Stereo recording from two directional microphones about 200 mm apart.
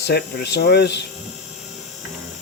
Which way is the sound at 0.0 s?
55° left (ahead or behind).